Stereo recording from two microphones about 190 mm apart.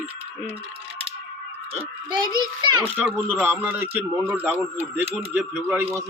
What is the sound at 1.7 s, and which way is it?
A child's voice, 25° right (ahead or behind).